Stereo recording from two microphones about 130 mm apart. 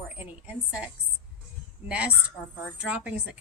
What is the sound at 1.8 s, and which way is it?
A woman's voice, 10° right (ahead or behind).